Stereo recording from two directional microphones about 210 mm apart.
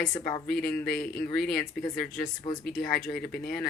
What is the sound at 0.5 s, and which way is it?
A woman's voice, 5° left (ahead or behind).